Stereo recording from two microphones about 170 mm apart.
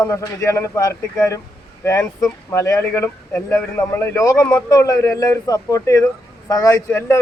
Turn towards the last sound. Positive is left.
turn(degrees=15)  # may be behind; listen again after turning